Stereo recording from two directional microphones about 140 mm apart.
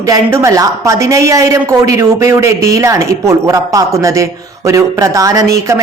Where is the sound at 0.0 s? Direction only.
20° right (ahead or behind).